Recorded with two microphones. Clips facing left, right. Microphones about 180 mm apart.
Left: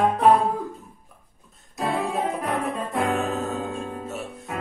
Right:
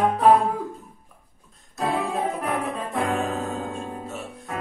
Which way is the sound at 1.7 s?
Centre (ahead or behind).